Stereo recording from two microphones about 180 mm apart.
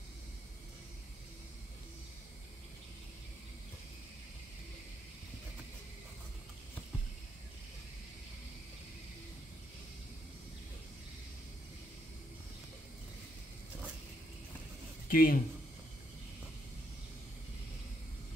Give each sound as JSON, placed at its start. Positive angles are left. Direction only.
{"t": 15.0, "sound": "speech", "side_deg": 55}